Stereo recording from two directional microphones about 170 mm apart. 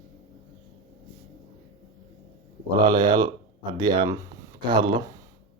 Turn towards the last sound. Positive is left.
turn(degrees=-25)  # may be behind; listen again after turning